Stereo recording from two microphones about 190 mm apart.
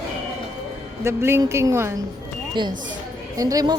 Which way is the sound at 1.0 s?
15° right (ahead or behind).